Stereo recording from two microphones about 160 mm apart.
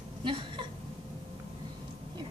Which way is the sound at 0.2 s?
30° right (ahead or behind).